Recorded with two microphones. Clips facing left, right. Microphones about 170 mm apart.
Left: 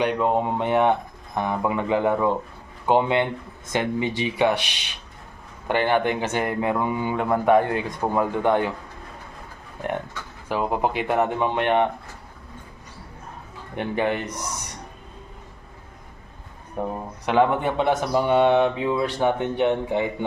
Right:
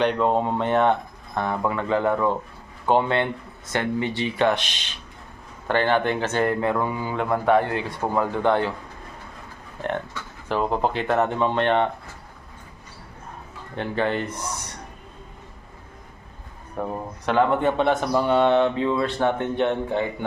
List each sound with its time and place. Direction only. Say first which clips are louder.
0.0 s speech: right 1 dB; 10° left (ahead or behind)
10.5 s speech: even; 10° left (ahead or behind)
13.7 s speech: left 1 dB; 15° left (ahead or behind)
16.8 s speech: even; 20° left (ahead or behind)